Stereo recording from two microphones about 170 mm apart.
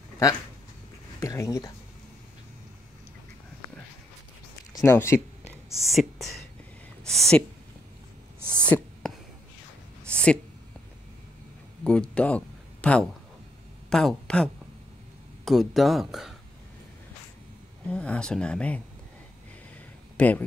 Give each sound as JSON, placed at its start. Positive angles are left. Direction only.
{"t": 1.2, "sound": "speech", "side_deg": 20}
{"t": 4.7, "sound": "speech", "side_deg": 15}
{"t": 5.8, "sound": "speech", "side_deg": 0}
{"t": 8.6, "sound": "a sound", "side_deg": 10}
{"t": 10.1, "sound": "a sound", "side_deg": 5}
{"t": 11.8, "sound": "speech", "side_deg": 5}
{"t": 17.8, "sound": "speech", "side_deg": 5}
{"t": 20.2, "sound": "speech", "side_deg": 10}